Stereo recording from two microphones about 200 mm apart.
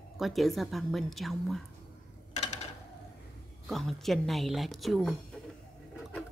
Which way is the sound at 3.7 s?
Centre (ahead or behind).